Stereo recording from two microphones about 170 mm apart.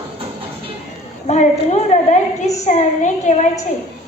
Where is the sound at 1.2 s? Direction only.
40° left (ahead or behind).